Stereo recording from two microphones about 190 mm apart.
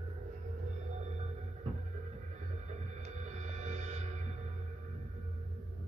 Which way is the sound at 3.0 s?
35° right (ahead or behind).